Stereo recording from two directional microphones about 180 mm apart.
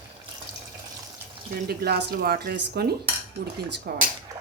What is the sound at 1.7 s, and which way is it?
Speech, 65° right (ahead or behind).